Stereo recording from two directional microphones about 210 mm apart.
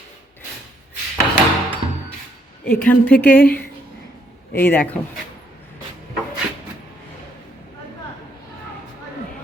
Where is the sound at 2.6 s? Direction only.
5° left (ahead or behind).